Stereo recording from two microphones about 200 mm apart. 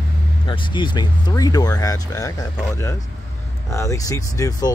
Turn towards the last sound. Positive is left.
turn(degrees=15)  # may be behind; listen again after turning